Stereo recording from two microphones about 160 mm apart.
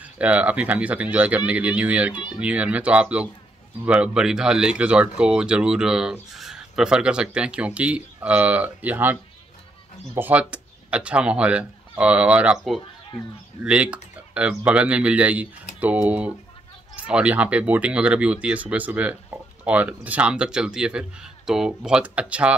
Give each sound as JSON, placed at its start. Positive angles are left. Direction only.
{"t": 0.0, "sound": "speech", "side_deg": -10}